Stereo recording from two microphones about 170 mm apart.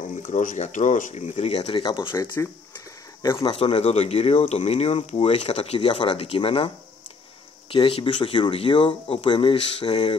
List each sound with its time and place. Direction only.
0.3 s speech: 45° left (ahead or behind)
1.8 s speech: 30° left (ahead or behind)
3.3 s speech: 35° left (ahead or behind)
7.7 s speech: 30° left (ahead or behind)